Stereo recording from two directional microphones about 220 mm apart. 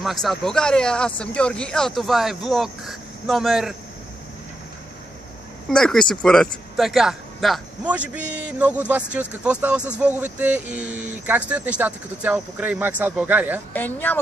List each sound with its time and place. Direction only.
0.0 s speech: centre (ahead or behind)
5.7 s speech: 5° left (ahead or behind)
13.7 s speech: 10° left (ahead or behind)